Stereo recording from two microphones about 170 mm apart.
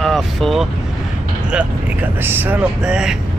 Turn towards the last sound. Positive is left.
turn(degrees=-5)  # may be behind; listen again after turning